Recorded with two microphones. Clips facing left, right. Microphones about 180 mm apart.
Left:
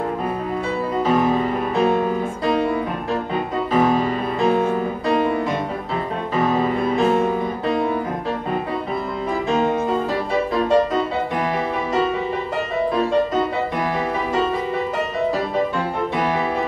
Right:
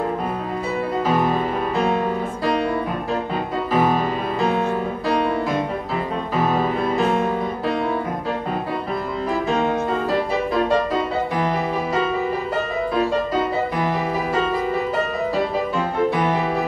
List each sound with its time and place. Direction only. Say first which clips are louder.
1.0 s music: left 2 dB; centre (ahead or behind)
3.7 s music: left 2 dB; centre (ahead or behind)
6.3 s music: left 1 dB; centre (ahead or behind)
9.5 s music: left 3 dB; centre (ahead or behind)